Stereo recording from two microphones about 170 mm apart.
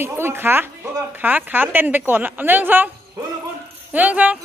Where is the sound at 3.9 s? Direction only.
10° right (ahead or behind).